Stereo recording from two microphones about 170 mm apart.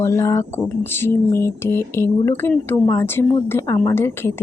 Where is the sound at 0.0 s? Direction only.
15° left (ahead or behind).